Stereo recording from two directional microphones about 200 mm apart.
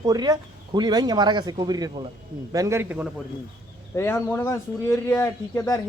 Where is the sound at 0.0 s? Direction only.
20° right (ahead or behind).